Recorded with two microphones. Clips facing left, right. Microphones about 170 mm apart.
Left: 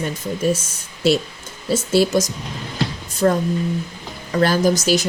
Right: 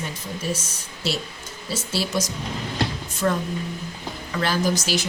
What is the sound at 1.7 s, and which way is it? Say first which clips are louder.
Speech: left 10 dB; 50° left (ahead or behind).